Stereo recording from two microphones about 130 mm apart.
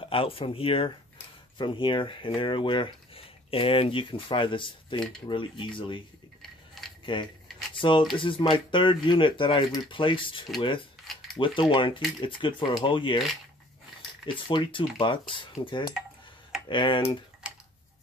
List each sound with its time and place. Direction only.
0.0 s speech: 45° left (ahead or behind)
7.1 s speech: 40° left (ahead or behind)
14.2 s speech: 40° left (ahead or behind)